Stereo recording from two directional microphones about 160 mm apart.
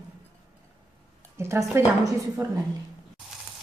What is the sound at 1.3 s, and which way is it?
A woman's voice, 15° right (ahead or behind).